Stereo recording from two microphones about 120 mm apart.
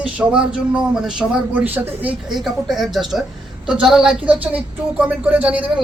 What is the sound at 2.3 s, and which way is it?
A woman's voice, centre (ahead or behind).